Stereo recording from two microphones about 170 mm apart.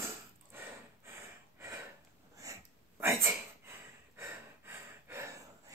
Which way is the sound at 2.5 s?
20° right (ahead or behind).